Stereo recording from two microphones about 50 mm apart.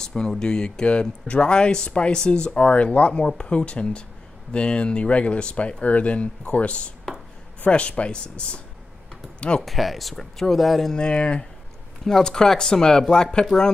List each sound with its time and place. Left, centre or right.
0.0 s speech: centre
9.6 s speech: centre
10.9 s speech: centre